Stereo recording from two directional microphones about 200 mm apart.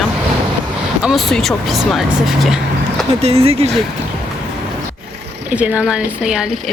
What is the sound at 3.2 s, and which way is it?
Speech, 30° right (ahead or behind).